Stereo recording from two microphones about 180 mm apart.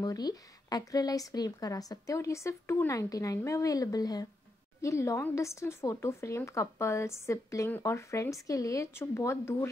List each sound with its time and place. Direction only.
0.0 s a woman's voice: 20° left (ahead or behind)